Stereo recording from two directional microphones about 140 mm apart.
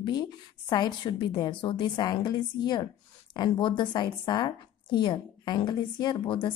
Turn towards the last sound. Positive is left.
turn(degrees=35)  # may be behind; listen again after turning